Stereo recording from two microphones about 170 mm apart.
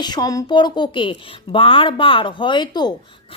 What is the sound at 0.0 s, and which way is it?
Speech, 25° left (ahead or behind).